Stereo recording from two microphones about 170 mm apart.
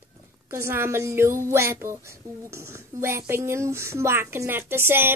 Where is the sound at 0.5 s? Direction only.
15° right (ahead or behind).